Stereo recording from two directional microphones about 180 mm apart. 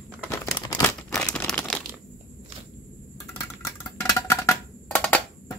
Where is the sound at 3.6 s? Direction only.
15° left (ahead or behind).